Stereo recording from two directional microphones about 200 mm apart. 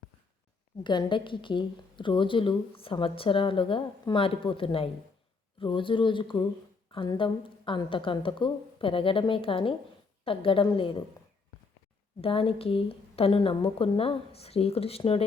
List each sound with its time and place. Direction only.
0.9 s a woman's voice: 25° left (ahead or behind)
12.2 s a woman's voice: 30° left (ahead or behind)